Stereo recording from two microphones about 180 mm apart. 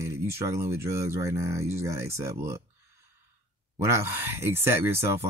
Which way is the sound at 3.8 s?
15° right (ahead or behind).